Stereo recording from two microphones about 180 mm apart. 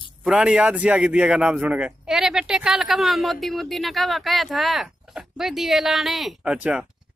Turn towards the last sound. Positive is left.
turn(degrees=-5)  # may be behind; listen again after turning